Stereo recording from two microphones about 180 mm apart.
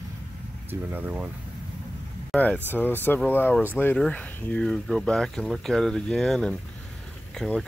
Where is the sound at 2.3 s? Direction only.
5° left (ahead or behind).